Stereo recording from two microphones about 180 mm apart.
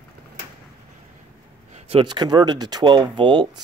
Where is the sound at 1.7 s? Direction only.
30° right (ahead or behind).